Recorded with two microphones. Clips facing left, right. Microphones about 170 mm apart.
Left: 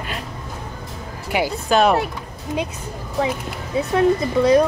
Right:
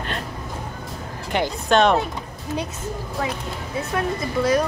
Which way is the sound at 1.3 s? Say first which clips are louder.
Left 1 dB; 5° left (ahead or behind).